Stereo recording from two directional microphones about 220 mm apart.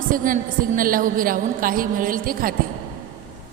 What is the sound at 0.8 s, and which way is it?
A woman's voice, 40° right (ahead or behind).